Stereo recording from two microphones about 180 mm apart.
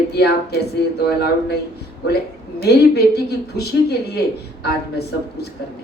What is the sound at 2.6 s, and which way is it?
Speech, 65° left (ahead or behind).